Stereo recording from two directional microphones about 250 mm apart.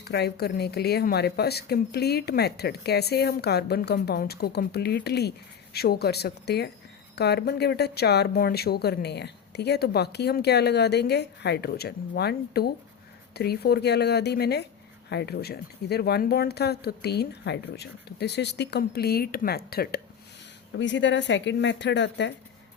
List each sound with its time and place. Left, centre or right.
0.0 s speech: left